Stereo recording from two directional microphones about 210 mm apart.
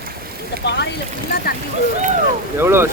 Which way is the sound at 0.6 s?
55° left (ahead or behind).